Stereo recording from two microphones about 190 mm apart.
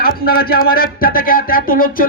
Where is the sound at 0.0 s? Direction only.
50° left (ahead or behind).